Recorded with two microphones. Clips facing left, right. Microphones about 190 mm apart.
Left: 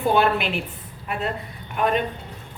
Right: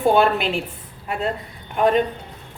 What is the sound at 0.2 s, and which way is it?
Speech, 30° right (ahead or behind).